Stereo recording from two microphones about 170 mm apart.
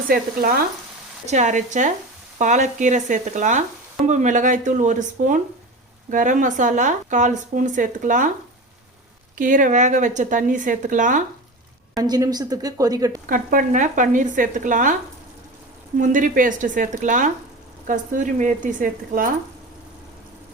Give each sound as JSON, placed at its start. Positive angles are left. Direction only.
{"t": 0.1, "sound": "frying", "side_deg": -60}
{"t": 1.3, "sound": "speech", "side_deg": -45}
{"t": 9.4, "sound": "speech", "side_deg": -50}
{"t": 11.9, "sound": "a woman's voice", "side_deg": -25}
{"t": 13.2, "sound": "speech", "side_deg": -55}
{"t": 16.0, "sound": "speech", "side_deg": -50}